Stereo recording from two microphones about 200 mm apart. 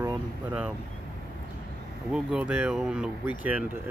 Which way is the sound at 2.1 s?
5° right (ahead or behind).